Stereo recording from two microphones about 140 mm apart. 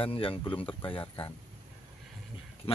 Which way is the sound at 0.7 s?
10° left (ahead or behind).